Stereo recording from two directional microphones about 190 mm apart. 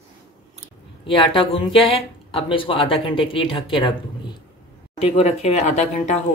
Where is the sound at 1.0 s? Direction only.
30° left (ahead or behind).